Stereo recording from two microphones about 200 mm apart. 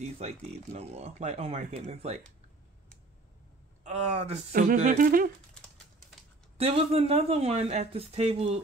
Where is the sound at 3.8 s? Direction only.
30° right (ahead or behind).